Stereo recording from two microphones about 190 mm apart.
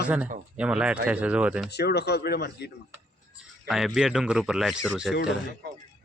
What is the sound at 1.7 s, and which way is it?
Speech, 60° left (ahead or behind).